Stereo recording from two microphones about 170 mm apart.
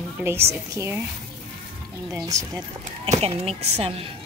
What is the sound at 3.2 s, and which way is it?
Speech, 35° right (ahead or behind).